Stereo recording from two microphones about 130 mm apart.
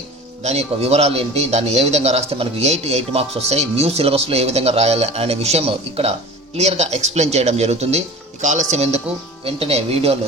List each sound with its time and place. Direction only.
0.4 s a man's voice: 55° right (ahead or behind)
9.4 s a man's voice: 50° right (ahead or behind)